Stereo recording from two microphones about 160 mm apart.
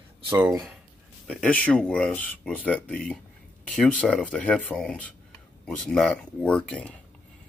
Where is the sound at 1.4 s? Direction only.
5° left (ahead or behind).